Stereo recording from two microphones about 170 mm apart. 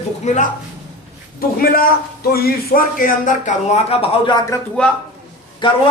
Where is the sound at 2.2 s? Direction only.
60° left (ahead or behind); by 4.4 s 35° left (ahead or behind).